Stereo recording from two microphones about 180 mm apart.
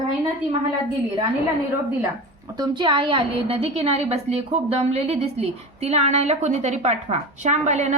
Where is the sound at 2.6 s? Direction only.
25° right (ahead or behind).